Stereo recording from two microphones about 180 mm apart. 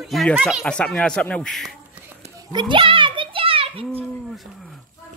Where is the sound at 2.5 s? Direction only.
25° right (ahead or behind).